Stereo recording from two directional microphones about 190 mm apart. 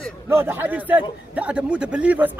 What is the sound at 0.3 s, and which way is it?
A man's voice, 10° right (ahead or behind).